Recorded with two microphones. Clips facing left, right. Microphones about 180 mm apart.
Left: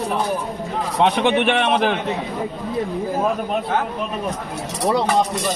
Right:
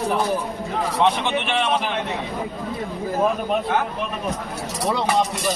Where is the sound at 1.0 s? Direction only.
60° left (ahead or behind).